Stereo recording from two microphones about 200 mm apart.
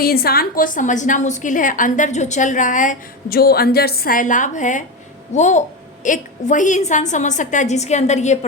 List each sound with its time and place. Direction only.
0.0 s a woman's voice: 50° left (ahead or behind)